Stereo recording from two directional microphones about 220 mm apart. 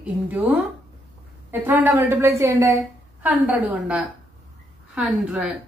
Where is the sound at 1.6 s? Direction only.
10° right (ahead or behind).